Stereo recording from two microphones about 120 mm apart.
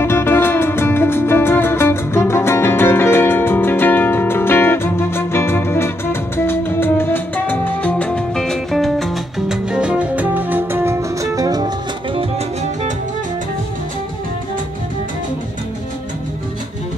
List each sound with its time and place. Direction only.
0.0 s music: 20° left (ahead or behind); by 11.7 s 30° right (ahead or behind)